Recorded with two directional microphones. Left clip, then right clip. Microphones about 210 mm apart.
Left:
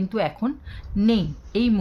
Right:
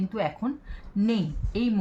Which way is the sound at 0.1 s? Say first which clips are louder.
Left 5 dB; 45° left (ahead or behind).